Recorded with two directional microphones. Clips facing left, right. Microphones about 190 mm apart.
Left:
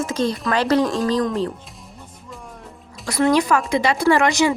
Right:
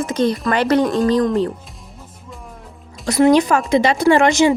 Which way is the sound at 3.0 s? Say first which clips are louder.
Right 5 dB; 20° right (ahead or behind).